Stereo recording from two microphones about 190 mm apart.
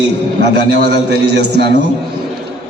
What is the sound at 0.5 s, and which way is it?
A man's voice, 60° right (ahead or behind).